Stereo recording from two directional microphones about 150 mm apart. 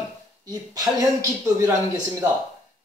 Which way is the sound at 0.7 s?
25° right (ahead or behind).